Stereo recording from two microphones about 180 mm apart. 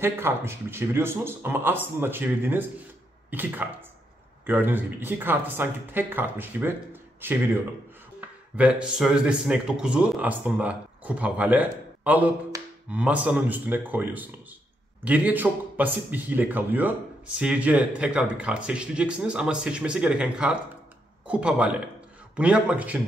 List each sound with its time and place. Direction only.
0.0 s speech: 15° right (ahead or behind)
12.5 s a sound: 20° right (ahead or behind)
12.9 s speech: 5° right (ahead or behind)